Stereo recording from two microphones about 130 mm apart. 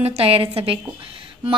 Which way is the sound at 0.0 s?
50° right (ahead or behind).